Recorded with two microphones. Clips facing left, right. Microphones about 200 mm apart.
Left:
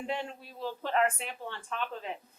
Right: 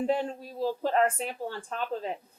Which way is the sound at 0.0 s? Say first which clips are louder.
Right 8 dB; 35° right (ahead or behind).